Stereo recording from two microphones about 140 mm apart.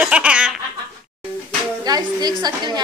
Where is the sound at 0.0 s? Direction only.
10° right (ahead or behind).